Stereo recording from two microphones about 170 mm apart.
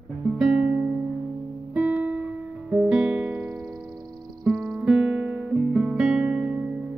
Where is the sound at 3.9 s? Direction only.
25° right (ahead or behind).